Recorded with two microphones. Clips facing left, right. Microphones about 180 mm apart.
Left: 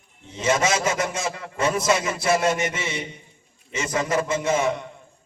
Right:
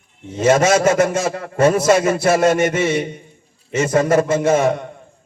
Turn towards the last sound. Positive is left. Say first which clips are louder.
# right 7 dB
turn(degrees=-55)  # may be behind; listen again after turning